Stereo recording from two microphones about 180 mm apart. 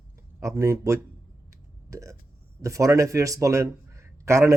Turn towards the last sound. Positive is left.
turn(degrees=-15)  # may be behind; listen again after turning